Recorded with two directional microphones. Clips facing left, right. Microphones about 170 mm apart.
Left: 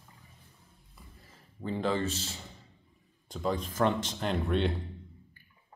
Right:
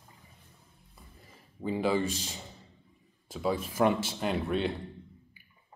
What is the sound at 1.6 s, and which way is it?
Speech, 10° right (ahead or behind).